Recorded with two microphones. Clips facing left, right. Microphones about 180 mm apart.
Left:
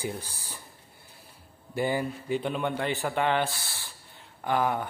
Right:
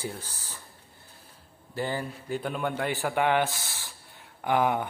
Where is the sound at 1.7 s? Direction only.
15° left (ahead or behind).